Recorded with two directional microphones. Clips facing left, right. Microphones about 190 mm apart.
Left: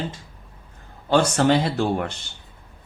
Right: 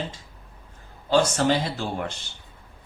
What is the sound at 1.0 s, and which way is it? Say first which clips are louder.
Speech: left 2 dB; 60° left (ahead or behind).